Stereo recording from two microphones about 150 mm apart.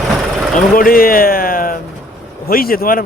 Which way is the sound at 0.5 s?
70° left (ahead or behind).